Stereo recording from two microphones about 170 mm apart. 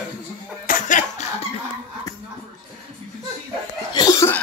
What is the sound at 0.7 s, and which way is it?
Music, 45° left (ahead or behind).